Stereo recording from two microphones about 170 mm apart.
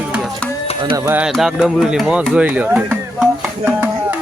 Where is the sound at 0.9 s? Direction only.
15° right (ahead or behind).